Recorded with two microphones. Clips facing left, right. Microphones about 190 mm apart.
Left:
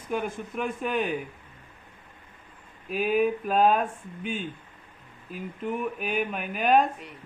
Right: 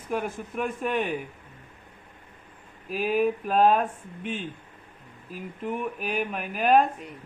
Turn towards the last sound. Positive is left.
turn(degrees=0)  # may be behind; listen again after turning